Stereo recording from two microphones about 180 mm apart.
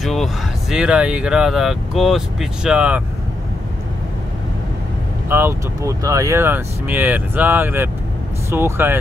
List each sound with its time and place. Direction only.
0.0 s speech: centre (ahead or behind)
5.3 s speech: 15° right (ahead or behind)